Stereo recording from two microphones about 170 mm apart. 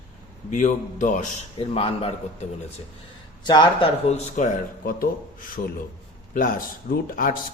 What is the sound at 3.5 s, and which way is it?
Speech, 25° left (ahead or behind).